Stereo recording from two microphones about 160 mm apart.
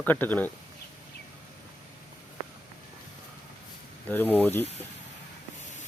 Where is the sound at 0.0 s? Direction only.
10° left (ahead or behind).